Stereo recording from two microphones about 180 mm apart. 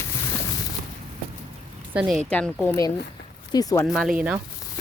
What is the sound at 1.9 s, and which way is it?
Speech, 10° right (ahead or behind).